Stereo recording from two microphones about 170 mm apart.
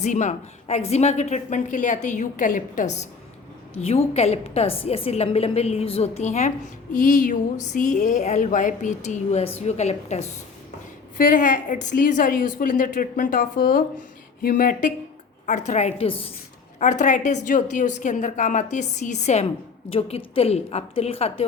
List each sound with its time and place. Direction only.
0.0 s a woman's voice: 45° left (ahead or behind)
11.2 s a woman's voice: 50° left (ahead or behind); by 16.3 s 35° left (ahead or behind)
16.8 s a woman's voice: 45° left (ahead or behind)